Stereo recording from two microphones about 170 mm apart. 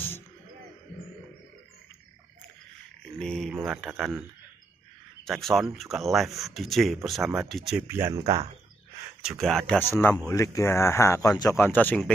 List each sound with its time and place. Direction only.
3.2 s speech: 5° left (ahead or behind)
5.2 s speech: centre (ahead or behind)
7.8 s speech: 15° right (ahead or behind)
8.2 s speech: 35° right (ahead or behind)
9.2 s speech: centre (ahead or behind)